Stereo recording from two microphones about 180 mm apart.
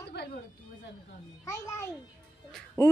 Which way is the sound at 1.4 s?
15° left (ahead or behind).